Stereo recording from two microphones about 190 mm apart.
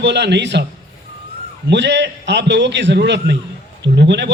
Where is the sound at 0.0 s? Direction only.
65° right (ahead or behind).